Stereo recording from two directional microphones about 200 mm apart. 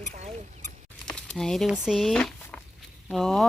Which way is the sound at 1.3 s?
Centre (ahead or behind).